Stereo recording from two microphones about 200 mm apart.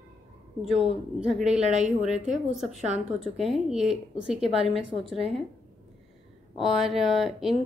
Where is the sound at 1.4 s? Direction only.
35° right (ahead or behind).